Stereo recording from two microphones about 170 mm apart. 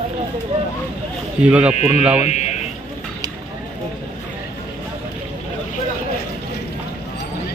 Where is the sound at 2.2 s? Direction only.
40° left (ahead or behind).